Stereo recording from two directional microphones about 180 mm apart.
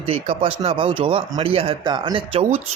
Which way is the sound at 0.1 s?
30° right (ahead or behind).